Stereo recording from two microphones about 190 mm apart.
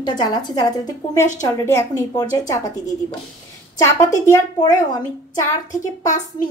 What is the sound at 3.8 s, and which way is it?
A child's voice, 15° left (ahead or behind).